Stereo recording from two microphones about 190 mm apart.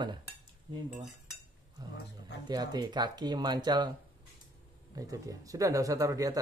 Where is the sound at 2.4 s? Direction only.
20° right (ahead or behind).